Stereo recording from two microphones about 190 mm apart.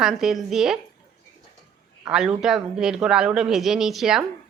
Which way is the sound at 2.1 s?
5° right (ahead or behind).